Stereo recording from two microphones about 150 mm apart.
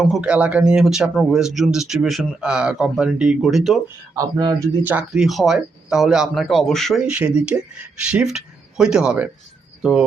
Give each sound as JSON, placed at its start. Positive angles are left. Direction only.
{"t": 0.0, "sound": "speech", "side_deg": -5}
{"t": 4.1, "sound": "speech", "side_deg": -25}
{"t": 4.8, "sound": "speech", "side_deg": -10}